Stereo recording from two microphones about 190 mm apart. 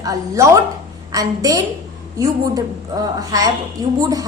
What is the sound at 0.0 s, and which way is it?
A woman's voice, 15° right (ahead or behind).